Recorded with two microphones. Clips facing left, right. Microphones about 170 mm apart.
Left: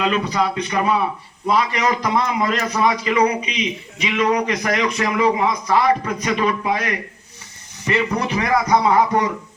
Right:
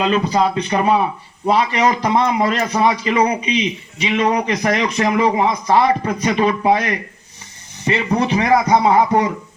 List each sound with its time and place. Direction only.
0.0 s a man's voice: 30° right (ahead or behind)
7.9 s speech: 25° right (ahead or behind)